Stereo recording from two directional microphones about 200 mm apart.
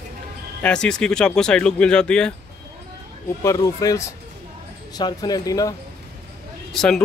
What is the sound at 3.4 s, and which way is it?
Speech, 15° left (ahead or behind).